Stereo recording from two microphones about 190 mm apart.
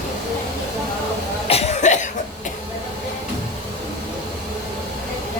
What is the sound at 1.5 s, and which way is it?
Cough, 35° left (ahead or behind).